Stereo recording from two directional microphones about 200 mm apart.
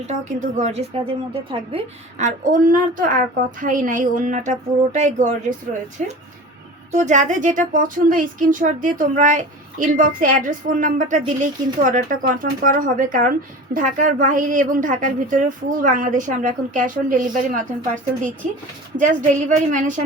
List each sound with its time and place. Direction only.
0.0 s a woman's voice: 35° right (ahead or behind)
18.9 s a woman's voice: 40° right (ahead or behind)